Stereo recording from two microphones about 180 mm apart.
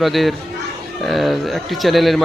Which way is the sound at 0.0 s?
Centre (ahead or behind).